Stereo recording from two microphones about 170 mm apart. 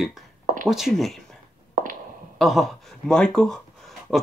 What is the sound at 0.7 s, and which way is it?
Speech, centre (ahead or behind).